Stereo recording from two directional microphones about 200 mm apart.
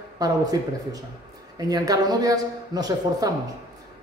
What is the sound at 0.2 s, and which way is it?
Speech, 20° right (ahead or behind).